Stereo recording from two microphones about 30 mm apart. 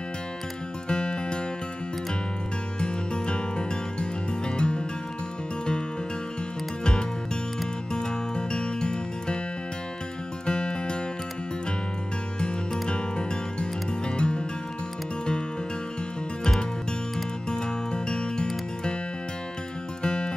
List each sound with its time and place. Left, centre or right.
0.8 s music: left
2.8 s music: left
6.8 s music: left
10.4 s music: left
12.8 s music: left
17.5 s music: left
20.0 s music: left